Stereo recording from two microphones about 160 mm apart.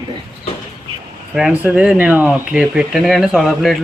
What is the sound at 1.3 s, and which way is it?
Speech, 5° right (ahead or behind).